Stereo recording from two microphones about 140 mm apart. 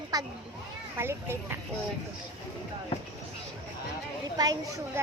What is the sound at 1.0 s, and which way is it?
Speech, 15° right (ahead or behind).